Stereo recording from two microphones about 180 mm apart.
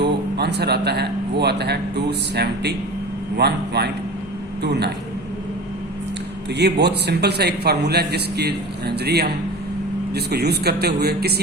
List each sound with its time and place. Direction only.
0.0 s speech: 65° right (ahead or behind)
6.5 s speech: 70° right (ahead or behind)